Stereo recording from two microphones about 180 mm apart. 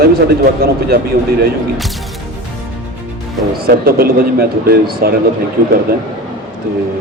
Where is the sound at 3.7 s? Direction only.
55° right (ahead or behind).